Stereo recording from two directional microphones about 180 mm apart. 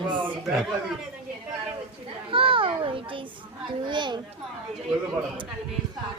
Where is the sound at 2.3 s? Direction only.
30° right (ahead or behind).